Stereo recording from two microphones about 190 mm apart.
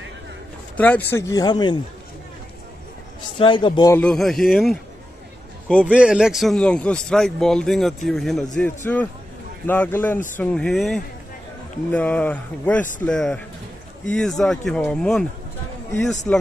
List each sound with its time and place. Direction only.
0.7 s speech: 10° left (ahead or behind)
3.3 s speech: 25° left (ahead or behind)
3.9 s a man's voice: 5° left (ahead or behind)
5.9 s a man's voice: 5° right (ahead or behind)
16.3 s speech: 5° left (ahead or behind)